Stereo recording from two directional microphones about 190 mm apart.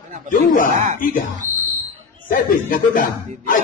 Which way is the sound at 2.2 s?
45° left (ahead or behind).